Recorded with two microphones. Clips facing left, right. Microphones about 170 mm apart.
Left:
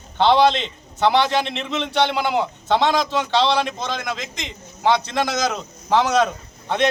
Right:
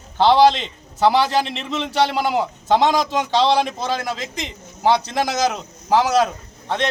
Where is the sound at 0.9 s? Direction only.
5° right (ahead or behind).